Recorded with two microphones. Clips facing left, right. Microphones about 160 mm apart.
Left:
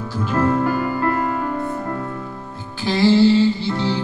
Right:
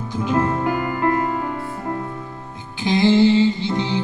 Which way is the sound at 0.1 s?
20° right (ahead or behind).